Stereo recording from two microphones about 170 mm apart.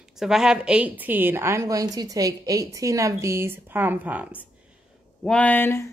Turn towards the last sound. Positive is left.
turn(degrees=15)  # may be behind; listen again after turning